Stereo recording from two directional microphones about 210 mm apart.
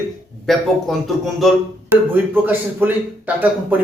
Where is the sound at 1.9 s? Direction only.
10° right (ahead or behind).